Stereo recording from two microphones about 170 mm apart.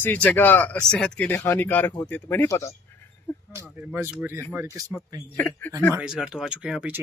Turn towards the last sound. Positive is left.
turn(degrees=-5)  # may be behind; listen again after turning